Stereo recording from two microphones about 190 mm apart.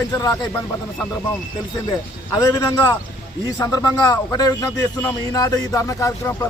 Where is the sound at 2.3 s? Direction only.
15° left (ahead or behind).